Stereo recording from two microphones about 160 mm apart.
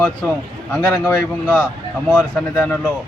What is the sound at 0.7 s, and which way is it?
A man's voice, 10° left (ahead or behind).